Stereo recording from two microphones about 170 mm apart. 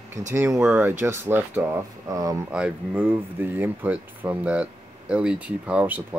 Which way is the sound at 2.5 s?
5° right (ahead or behind).